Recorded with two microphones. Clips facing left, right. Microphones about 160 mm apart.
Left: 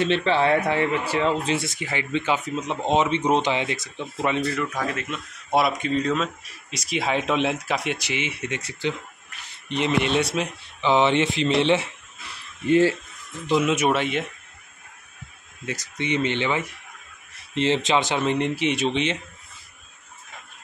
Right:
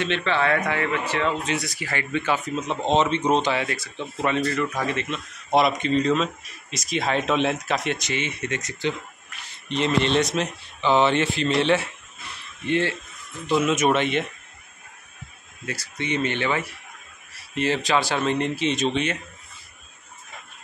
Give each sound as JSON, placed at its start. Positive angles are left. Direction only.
{"t": 0.0, "sound": "speech", "side_deg": 35}
{"t": 13.5, "sound": "speech", "side_deg": 15}
{"t": 15.6, "sound": "speech", "side_deg": 15}